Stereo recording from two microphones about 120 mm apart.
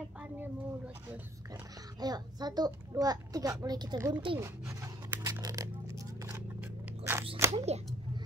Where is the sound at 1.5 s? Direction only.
30° right (ahead or behind).